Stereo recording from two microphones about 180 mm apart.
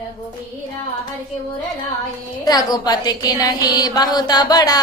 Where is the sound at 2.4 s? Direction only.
20° left (ahead or behind).